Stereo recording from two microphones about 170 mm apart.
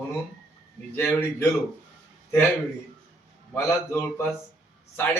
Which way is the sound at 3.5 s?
15° left (ahead or behind).